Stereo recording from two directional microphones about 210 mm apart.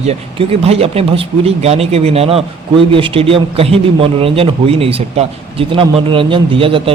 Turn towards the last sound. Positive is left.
turn(degrees=-25)  # may be behind; listen again after turning